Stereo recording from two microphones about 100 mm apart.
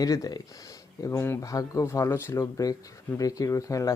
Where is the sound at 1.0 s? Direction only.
30° left (ahead or behind).